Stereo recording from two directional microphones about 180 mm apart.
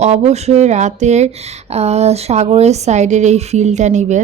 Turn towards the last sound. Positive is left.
turn(degrees=-40)  # may be behind; listen again after turning